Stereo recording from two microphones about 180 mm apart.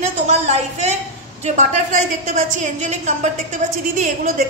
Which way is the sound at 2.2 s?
40° right (ahead or behind).